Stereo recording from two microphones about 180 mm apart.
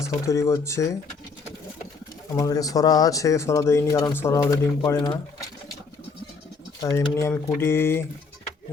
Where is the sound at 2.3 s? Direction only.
20° left (ahead or behind).